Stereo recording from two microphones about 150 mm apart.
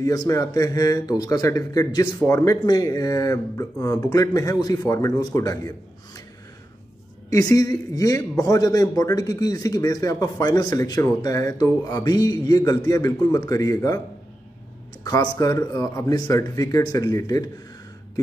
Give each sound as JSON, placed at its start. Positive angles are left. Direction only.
{"t": 0.0, "sound": "speech", "side_deg": 25}
{"t": 7.2, "sound": "speech", "side_deg": 25}
{"t": 15.3, "sound": "speech", "side_deg": 25}